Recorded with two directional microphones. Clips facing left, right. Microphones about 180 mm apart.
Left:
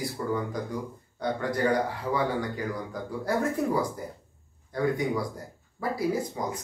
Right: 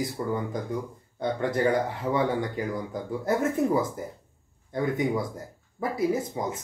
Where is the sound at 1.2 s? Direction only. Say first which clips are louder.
Right 2 dB; 25° right (ahead or behind).